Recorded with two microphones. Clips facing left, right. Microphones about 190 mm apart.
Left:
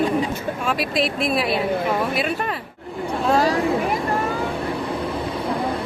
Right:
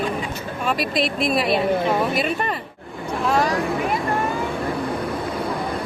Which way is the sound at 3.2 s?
30° left (ahead or behind).